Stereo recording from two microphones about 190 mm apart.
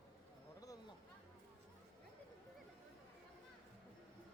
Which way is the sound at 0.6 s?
20° left (ahead or behind).